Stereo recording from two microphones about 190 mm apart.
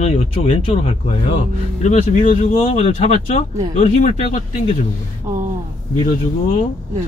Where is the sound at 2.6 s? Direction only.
30° left (ahead or behind).